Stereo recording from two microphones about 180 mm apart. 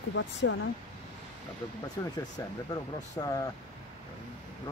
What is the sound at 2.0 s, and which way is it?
Speech, 20° left (ahead or behind).